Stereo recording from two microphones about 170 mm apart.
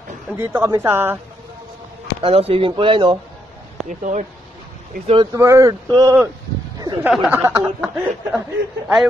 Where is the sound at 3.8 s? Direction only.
45° right (ahead or behind).